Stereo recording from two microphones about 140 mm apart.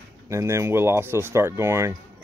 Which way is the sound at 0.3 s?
20° right (ahead or behind).